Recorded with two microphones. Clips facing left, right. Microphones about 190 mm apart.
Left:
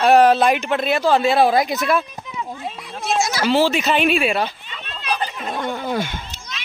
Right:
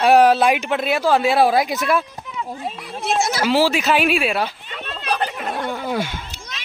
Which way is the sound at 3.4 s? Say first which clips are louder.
Even; 5° right (ahead or behind).